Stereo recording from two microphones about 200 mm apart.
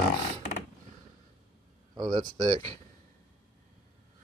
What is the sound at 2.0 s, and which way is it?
Speech, 20° right (ahead or behind).